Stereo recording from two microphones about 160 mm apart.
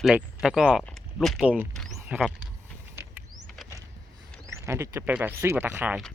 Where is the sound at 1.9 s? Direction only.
15° right (ahead or behind).